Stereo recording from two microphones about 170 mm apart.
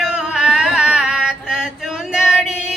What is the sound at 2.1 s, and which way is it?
Female singing, 5° right (ahead or behind).